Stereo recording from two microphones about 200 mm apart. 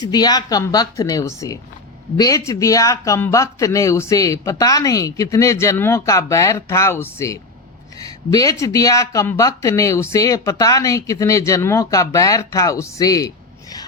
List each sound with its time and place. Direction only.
0.0 s a woman's voice: 20° left (ahead or behind)